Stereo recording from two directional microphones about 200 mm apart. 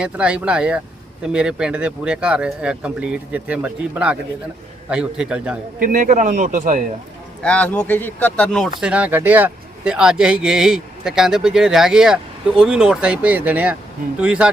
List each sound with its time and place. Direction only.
0.0 s speech: 5° right (ahead or behind)
5.8 s a man's voice: 40° right (ahead or behind)
7.4 s speech: 5° left (ahead or behind)